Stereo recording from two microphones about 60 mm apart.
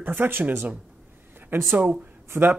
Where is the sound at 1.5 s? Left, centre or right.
Right.